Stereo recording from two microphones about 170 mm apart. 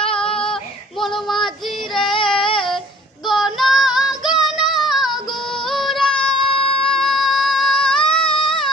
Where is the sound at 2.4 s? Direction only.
30° left (ahead or behind).